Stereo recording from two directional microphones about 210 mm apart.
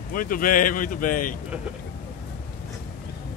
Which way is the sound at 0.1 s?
40° left (ahead or behind).